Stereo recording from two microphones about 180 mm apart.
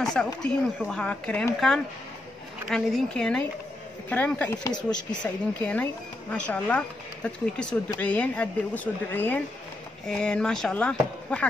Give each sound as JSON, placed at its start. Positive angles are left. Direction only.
{"t": 0.0, "sound": "speech", "side_deg": 5}
{"t": 4.9, "sound": "speech", "side_deg": 25}
{"t": 6.3, "sound": "speech", "side_deg": 5}